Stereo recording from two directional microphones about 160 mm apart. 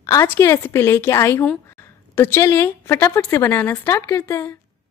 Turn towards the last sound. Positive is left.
turn(degrees=15)  # may be behind; listen again after turning